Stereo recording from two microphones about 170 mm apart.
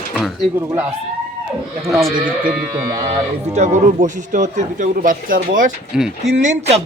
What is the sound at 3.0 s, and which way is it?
Speech, 40° right (ahead or behind).